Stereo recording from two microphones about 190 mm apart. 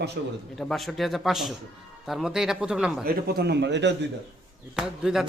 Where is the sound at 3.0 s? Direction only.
60° right (ahead or behind).